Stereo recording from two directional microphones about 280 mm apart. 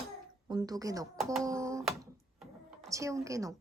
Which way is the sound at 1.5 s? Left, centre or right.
Centre.